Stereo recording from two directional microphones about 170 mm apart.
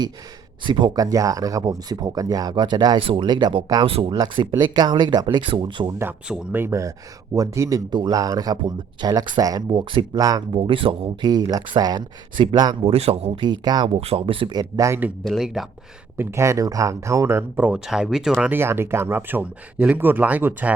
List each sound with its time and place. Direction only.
0.6 s speech: 25° right (ahead or behind)
6.0 s speech: 10° right (ahead or behind)
15.2 s speech: centre (ahead or behind)
16.1 s speech: 15° right (ahead or behind)